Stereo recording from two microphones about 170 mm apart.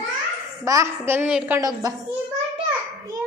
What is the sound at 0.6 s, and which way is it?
Speech, 20° right (ahead or behind).